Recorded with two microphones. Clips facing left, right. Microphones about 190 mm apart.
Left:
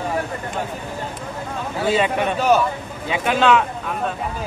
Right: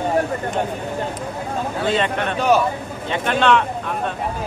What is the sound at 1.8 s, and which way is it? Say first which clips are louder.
Speech: left 3 dB; 5° left (ahead or behind).